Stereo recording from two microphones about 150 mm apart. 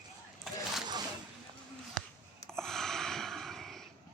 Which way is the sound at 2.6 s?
5° left (ahead or behind).